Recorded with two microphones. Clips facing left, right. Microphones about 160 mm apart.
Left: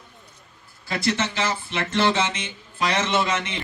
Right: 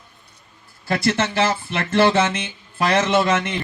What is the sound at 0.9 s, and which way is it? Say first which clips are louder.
A man's voice: right 4 dB; 55° right (ahead or behind).